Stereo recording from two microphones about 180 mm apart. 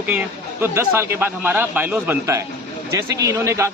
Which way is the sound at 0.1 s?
10° right (ahead or behind).